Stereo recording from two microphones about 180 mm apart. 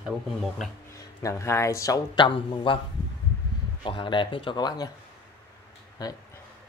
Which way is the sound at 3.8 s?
30° left (ahead or behind).